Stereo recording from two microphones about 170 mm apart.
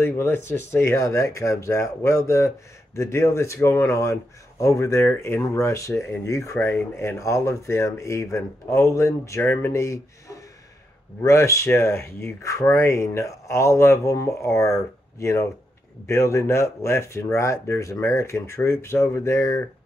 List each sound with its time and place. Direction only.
0.0 s speech: 15° left (ahead or behind)